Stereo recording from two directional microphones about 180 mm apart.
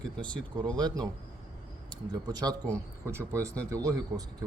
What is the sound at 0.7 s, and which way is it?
Speech, 20° right (ahead or behind).